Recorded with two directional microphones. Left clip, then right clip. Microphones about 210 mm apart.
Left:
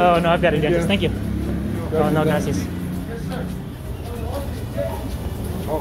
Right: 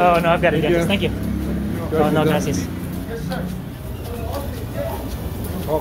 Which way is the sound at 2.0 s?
5° right (ahead or behind).